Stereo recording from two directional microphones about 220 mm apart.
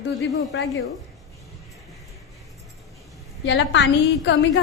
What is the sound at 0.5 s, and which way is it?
Speech, 55° left (ahead or behind).